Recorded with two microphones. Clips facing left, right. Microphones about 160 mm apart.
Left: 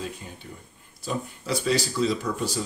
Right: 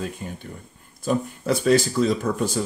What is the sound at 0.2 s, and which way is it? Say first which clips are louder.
Speech: right 6 dB; 50° right (ahead or behind).